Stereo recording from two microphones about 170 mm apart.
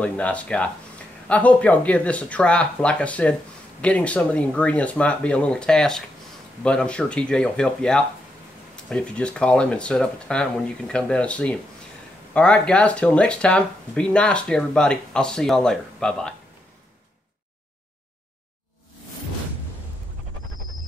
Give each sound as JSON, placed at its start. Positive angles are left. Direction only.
{"t": 0.0, "sound": "speech", "side_deg": 5}